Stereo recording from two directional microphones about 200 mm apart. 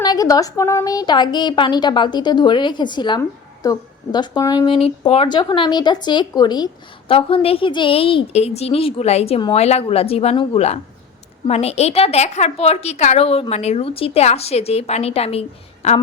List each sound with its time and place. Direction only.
0.0 s a woman's voice: 20° left (ahead or behind)